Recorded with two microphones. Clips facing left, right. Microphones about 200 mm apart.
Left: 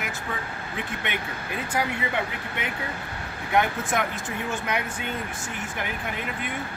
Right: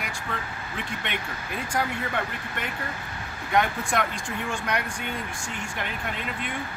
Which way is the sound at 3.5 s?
5° left (ahead or behind).